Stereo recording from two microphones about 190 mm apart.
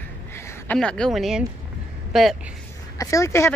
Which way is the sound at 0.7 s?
5° left (ahead or behind).